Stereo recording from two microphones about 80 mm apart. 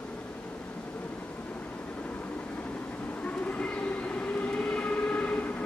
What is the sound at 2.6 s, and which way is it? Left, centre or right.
Train, centre.